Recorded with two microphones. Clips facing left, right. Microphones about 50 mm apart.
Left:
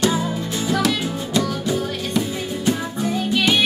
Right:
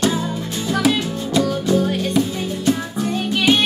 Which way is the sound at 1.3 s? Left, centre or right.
Centre.